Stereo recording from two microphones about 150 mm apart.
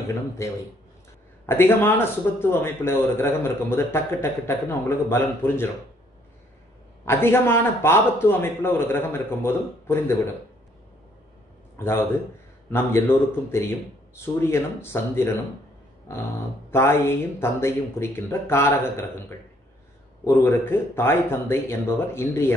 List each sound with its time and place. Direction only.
1.4 s a man's voice: 15° left (ahead or behind)
7.1 s a man's voice: 15° left (ahead or behind)
11.8 s a man's voice: 15° left (ahead or behind)
16.7 s a man's voice: 15° left (ahead or behind)
20.3 s a man's voice: 15° left (ahead or behind)